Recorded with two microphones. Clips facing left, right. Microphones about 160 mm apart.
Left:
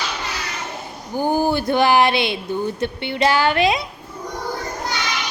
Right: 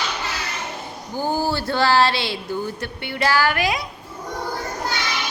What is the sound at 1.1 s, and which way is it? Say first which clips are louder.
Speech: left 4 dB; 15° left (ahead or behind).